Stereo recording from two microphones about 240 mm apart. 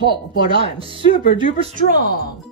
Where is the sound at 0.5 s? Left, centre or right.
Right.